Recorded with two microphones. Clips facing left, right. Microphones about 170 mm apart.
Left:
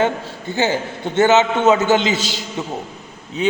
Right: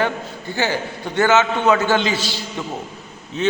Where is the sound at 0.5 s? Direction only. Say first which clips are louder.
Left 3 dB; 20° left (ahead or behind).